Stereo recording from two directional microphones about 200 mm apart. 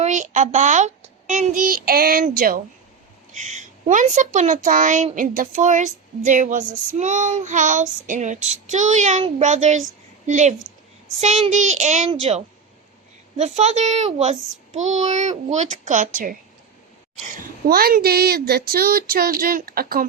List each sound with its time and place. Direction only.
0.0 s a woman's voice: 35° right (ahead or behind)
17.7 s child singing: 50° right (ahead or behind)